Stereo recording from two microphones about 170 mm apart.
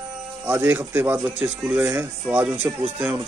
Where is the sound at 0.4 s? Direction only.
10° right (ahead or behind).